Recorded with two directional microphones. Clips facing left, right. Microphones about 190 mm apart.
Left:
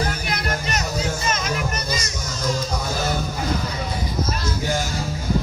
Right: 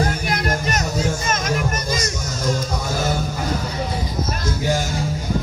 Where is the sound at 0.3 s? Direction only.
45° right (ahead or behind).